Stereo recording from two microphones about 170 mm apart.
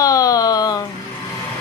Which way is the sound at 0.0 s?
20° left (ahead or behind).